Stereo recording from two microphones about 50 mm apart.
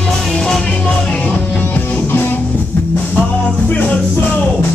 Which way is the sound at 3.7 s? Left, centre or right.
Left.